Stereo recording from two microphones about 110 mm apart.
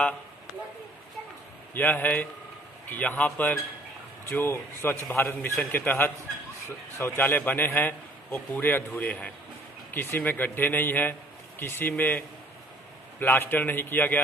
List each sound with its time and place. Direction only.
1.7 s a man's voice: 20° left (ahead or behind)